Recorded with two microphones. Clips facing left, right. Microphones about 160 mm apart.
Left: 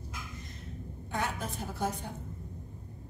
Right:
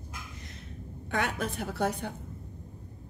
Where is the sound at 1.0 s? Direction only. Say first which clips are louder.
Right 4 dB; 70° right (ahead or behind).